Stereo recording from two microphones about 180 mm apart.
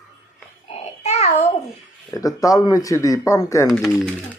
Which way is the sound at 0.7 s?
35° left (ahead or behind).